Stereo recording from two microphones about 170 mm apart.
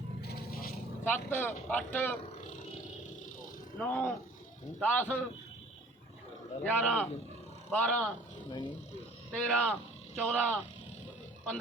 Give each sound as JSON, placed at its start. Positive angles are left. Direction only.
{"t": 0.2, "sound": "scrape", "side_deg": 70}
{"t": 1.0, "sound": "speech", "side_deg": 10}
{"t": 3.8, "sound": "speech", "side_deg": 10}
{"t": 6.7, "sound": "speech", "side_deg": 5}
{"t": 8.4, "sound": "speech", "side_deg": 30}
{"t": 9.3, "sound": "speech", "side_deg": 5}